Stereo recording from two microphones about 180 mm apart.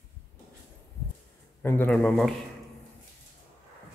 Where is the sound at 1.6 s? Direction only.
10° left (ahead or behind).